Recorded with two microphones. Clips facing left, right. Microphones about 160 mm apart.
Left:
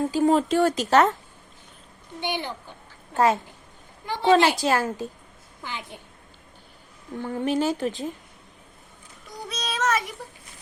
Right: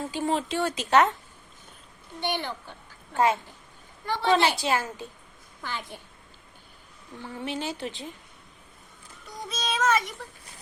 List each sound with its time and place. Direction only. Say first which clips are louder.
0.0 s speech: left 7 dB; 40° left (ahead or behind)
2.3 s speech: left 1 dB; 15° left (ahead or behind)
4.0 s a woman's voice: even; 15° left (ahead or behind)
4.3 s speech: left 5 dB; 45° left (ahead or behind)
5.6 s speech: even; 15° left (ahead or behind)
7.2 s speech: left 9 dB; 50° left (ahead or behind)
9.5 s child singing: even; centre (ahead or behind)